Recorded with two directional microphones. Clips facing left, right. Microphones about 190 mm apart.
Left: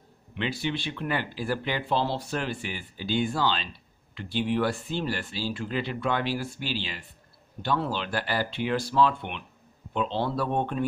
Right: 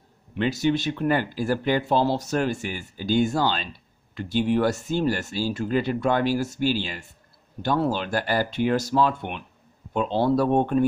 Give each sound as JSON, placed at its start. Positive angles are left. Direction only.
{"t": 0.3, "sound": "speech", "side_deg": -45}